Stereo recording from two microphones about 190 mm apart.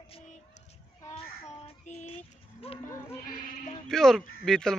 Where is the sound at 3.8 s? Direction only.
Centre (ahead or behind).